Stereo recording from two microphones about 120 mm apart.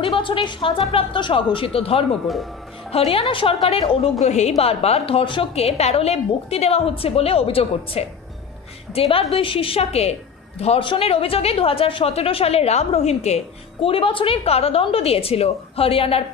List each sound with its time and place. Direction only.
0.0 s a woman's voice: 45° left (ahead or behind)
4.2 s a woman's voice: 70° left (ahead or behind); by 16.3 s 55° left (ahead or behind)